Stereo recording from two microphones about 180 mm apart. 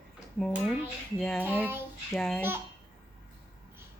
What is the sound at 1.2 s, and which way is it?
Speech, 5° left (ahead or behind).